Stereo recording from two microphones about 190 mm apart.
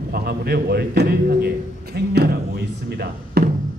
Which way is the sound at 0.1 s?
55° right (ahead or behind).